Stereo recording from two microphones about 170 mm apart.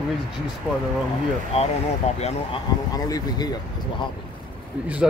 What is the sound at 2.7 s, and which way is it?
Speech, 25° left (ahead or behind).